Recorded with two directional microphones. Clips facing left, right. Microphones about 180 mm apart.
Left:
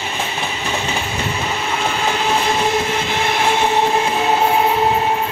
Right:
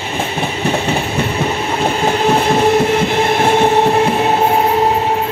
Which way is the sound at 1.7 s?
35° right (ahead or behind).